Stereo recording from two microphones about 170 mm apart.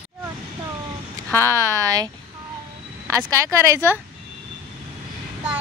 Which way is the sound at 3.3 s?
15° right (ahead or behind).